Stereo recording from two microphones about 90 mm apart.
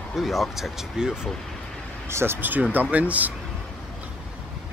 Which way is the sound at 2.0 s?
25° right (ahead or behind).